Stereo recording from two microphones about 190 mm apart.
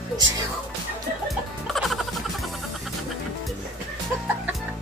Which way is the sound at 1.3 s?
Centre (ahead or behind).